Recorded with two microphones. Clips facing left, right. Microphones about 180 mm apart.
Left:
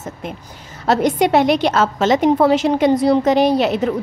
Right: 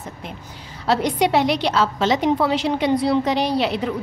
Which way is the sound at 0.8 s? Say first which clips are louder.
Left 4 dB; 45° left (ahead or behind).